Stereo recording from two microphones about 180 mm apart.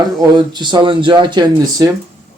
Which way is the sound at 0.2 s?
25° right (ahead or behind).